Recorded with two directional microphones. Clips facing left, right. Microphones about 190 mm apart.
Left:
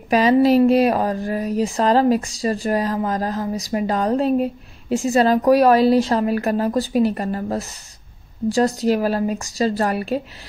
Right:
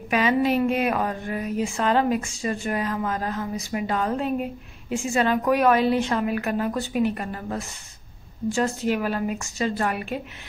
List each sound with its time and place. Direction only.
0.1 s speech: 35° left (ahead or behind)